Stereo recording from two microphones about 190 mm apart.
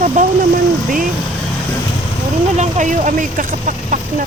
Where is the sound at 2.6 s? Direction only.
40° right (ahead or behind).